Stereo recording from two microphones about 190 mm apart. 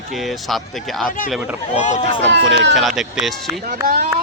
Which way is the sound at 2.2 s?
65° right (ahead or behind).